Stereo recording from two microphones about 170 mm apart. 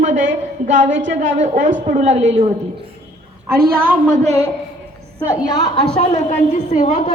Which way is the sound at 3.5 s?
60° right (ahead or behind).